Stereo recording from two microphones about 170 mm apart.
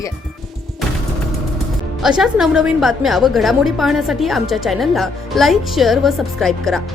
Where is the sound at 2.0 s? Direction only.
5° right (ahead or behind).